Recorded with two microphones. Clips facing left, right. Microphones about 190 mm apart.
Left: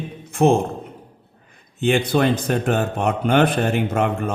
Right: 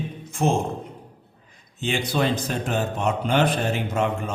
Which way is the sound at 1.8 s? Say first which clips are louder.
Left 6 dB; 55° left (ahead or behind).